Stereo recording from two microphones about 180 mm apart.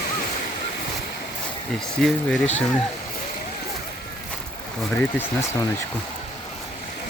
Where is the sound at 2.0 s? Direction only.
5° left (ahead or behind).